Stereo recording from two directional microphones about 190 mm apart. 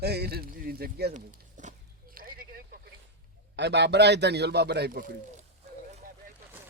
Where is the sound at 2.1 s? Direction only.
50° right (ahead or behind).